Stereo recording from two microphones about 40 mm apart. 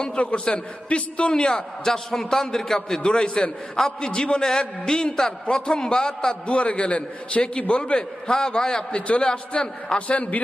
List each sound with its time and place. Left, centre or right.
0.0 s a man's voice: left
1.3 s a man's voice: centre
3.0 s a man's voice: centre
6.5 s a man's voice: left
8.3 s a man's voice: centre
8.9 s a man's voice: left